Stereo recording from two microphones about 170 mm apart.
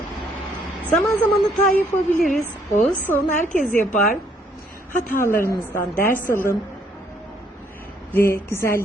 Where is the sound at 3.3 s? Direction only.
50° left (ahead or behind).